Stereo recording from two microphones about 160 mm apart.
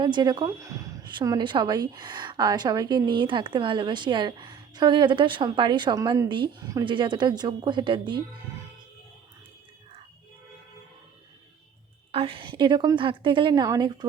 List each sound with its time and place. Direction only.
0.0 s a woman's voice: 25° right (ahead or behind)
12.1 s a woman's voice: 35° right (ahead or behind)